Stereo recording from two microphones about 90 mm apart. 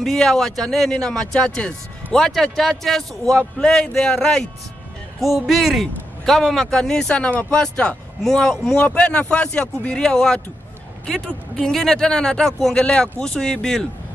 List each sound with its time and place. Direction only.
0.0 s a man's voice: 5° left (ahead or behind)